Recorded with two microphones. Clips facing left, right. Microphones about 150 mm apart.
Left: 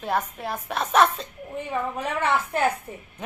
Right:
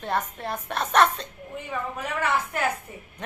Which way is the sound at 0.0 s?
5° left (ahead or behind).